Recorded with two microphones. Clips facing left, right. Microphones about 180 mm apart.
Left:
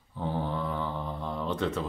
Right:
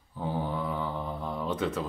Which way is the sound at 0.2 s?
5° right (ahead or behind).